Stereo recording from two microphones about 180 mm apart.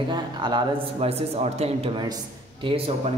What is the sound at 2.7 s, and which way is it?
Speech, 35° right (ahead or behind).